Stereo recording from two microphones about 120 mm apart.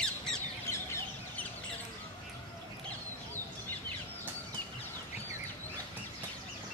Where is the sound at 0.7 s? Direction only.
25° left (ahead or behind).